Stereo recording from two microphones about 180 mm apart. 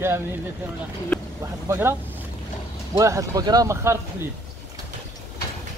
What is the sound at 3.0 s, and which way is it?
Speech, 20° right (ahead or behind).